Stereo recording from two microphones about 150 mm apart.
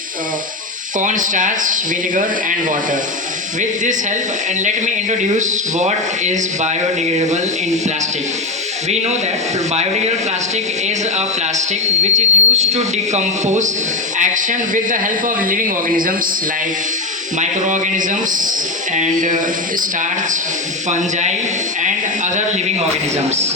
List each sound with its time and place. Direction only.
0.9 s speech: 60° right (ahead or behind)
4.6 s speech: 55° right (ahead or behind)
8.9 s speech: 45° right (ahead or behind)
11.5 s speech: 50° right (ahead or behind)
17.4 s speech: 60° right (ahead or behind)
21.8 s a sound: 55° right (ahead or behind)